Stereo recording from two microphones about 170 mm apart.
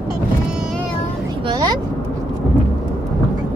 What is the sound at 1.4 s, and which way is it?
Speech, 25° right (ahead or behind).